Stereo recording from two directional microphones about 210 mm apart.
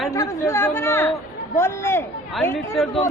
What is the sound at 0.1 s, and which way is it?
A woman's voice, 15° left (ahead or behind).